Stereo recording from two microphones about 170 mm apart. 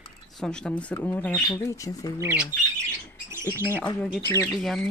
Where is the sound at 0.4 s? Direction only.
5° left (ahead or behind).